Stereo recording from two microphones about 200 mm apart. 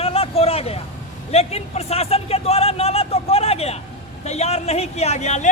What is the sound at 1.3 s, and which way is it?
A man's voice, 30° left (ahead or behind).